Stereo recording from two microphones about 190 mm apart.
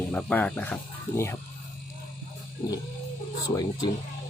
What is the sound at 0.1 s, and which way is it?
Speech, 10° left (ahead or behind).